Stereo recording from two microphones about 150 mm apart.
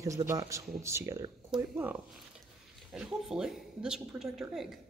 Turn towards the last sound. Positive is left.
turn(degrees=-5)  # may be behind; listen again after turning